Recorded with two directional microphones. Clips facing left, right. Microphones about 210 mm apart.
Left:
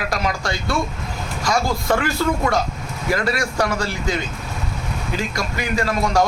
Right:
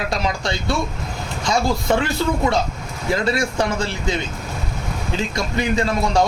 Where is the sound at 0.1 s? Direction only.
25° right (ahead or behind).